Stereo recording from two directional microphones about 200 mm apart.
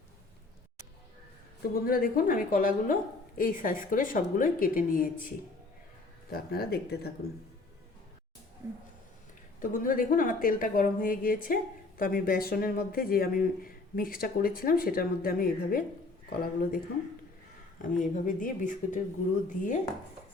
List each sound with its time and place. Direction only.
1.6 s a woman's voice: 45° left (ahead or behind)
6.3 s a woman's voice: 50° left (ahead or behind)
8.6 s speech: 15° right (ahead or behind)
9.6 s a woman's voice: 40° left (ahead or behind)
17.8 s speech: 40° left (ahead or behind)